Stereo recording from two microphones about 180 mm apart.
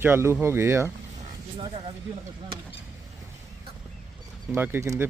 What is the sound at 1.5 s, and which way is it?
Speech, 30° right (ahead or behind).